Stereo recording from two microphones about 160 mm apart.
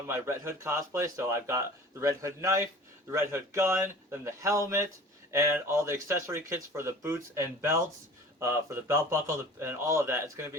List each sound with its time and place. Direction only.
0.1 s a man's voice: 15° right (ahead or behind)